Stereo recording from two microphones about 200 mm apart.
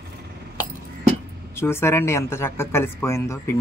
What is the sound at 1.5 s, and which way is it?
Speech, 10° left (ahead or behind).